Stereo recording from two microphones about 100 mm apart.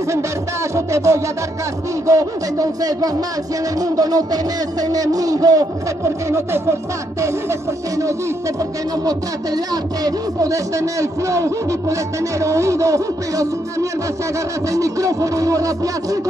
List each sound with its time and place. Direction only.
0.7 s music: 30° right (ahead or behind)
2.0 s a man's voice: 35° right (ahead or behind)
10.0 s a man's voice: 35° right (ahead or behind)